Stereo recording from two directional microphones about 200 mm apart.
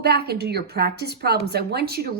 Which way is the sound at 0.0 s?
55° right (ahead or behind).